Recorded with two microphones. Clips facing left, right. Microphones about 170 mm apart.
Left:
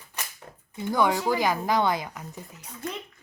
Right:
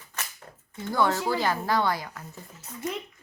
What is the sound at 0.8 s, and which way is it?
A woman's voice, 15° left (ahead or behind).